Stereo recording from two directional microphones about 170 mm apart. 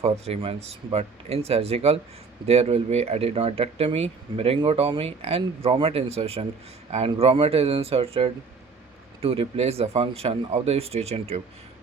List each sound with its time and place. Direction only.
0.0 s speech: 40° right (ahead or behind)